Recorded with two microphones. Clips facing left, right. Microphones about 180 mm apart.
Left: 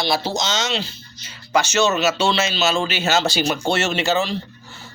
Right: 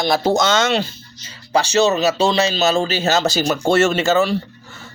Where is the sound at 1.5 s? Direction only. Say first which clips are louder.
Right 3 dB; 30° right (ahead or behind); by 4.4 s 50° right (ahead or behind).